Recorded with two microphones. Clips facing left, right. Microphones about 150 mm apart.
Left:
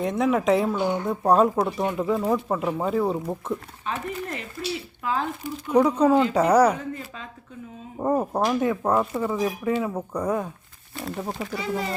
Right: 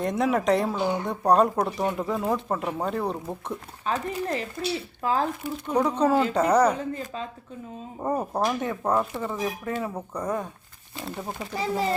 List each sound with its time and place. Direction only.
0.0 s speech: centre (ahead or behind)
3.8 s speech: 35° right (ahead or behind)
5.6 s speech: 5° left (ahead or behind)
6.3 s a woman's voice: 10° left (ahead or behind)
7.9 s speech: 5° left (ahead or behind)
11.5 s speech: 35° right (ahead or behind)